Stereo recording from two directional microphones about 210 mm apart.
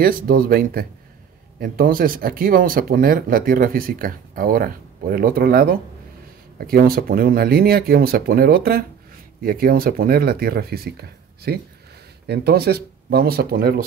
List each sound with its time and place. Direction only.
0.0 s speech: 40° right (ahead or behind)